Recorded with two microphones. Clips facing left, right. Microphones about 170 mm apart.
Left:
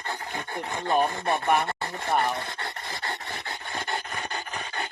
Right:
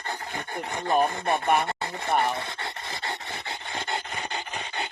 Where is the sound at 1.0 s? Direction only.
20° right (ahead or behind).